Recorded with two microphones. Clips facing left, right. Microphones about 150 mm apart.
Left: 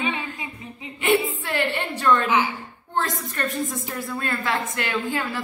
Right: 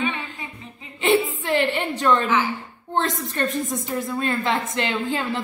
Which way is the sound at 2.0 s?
20° right (ahead or behind).